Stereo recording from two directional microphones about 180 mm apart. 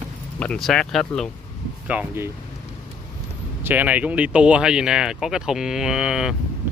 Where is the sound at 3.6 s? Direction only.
10° right (ahead or behind).